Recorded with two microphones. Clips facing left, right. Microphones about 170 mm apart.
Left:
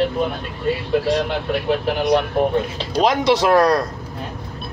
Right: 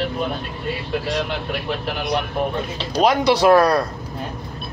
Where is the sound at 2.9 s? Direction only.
20° left (ahead or behind).